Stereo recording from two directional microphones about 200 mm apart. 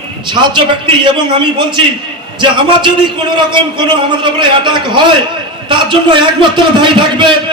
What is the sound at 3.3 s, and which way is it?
A man's voice, 25° right (ahead or behind).